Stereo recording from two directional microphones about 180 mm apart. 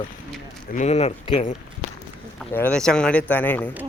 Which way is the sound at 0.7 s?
40° left (ahead or behind).